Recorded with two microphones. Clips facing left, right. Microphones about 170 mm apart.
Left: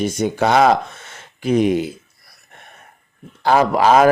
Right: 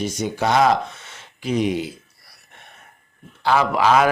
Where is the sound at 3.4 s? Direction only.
45° left (ahead or behind).